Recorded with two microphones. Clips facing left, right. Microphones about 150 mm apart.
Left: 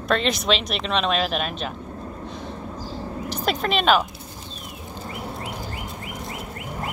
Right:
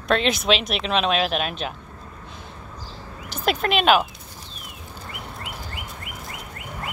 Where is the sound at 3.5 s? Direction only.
Centre (ahead or behind).